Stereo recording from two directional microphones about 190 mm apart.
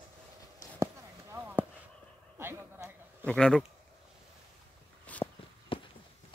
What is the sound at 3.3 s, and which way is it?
Speech, 5° left (ahead or behind).